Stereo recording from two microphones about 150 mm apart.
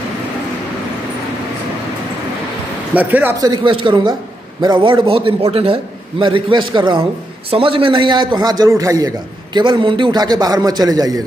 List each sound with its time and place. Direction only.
2.9 s speech: 10° right (ahead or behind)
3.3 s a man's voice: 25° right (ahead or behind)